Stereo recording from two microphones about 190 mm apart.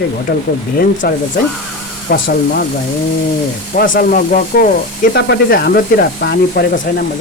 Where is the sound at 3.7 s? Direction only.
50° left (ahead or behind).